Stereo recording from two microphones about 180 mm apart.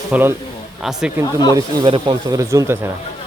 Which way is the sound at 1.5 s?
25° right (ahead or behind).